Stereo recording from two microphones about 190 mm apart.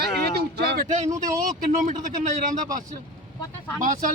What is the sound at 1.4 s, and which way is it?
Speech, 45° right (ahead or behind).